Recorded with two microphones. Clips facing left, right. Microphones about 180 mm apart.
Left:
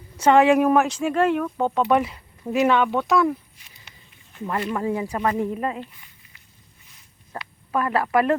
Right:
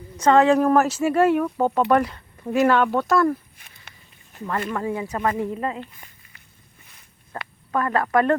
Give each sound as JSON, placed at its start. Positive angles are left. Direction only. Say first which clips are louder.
{"t": 0.2, "sound": "speech", "louder": "even", "side_deg": 10}
{"t": 0.8, "sound": "speech", "louder": "right 2 dB", "side_deg": -5}
{"t": 3.6, "sound": "a sound", "louder": "right 2 dB", "side_deg": -50}
{"t": 4.7, "sound": "speech", "louder": "left 1 dB", "side_deg": 15}
{"t": 6.8, "sound": "a sound", "louder": "right 1 dB", "side_deg": -55}
{"t": 7.7, "sound": "speech", "louder": "even", "side_deg": 10}